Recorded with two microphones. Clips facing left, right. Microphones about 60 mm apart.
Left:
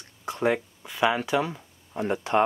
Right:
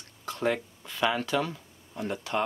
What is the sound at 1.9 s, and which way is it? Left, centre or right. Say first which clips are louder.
Speech: left 6 dB; left.